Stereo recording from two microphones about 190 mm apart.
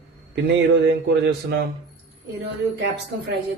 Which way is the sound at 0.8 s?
60° right (ahead or behind).